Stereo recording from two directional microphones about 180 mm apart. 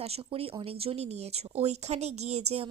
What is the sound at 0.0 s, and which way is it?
A woman's voice, 35° right (ahead or behind).